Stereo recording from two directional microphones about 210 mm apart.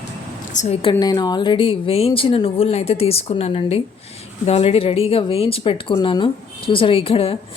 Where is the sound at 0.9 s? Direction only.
20° left (ahead or behind).